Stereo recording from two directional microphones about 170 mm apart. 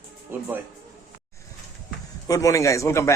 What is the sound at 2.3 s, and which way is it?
Speech, 20° left (ahead or behind).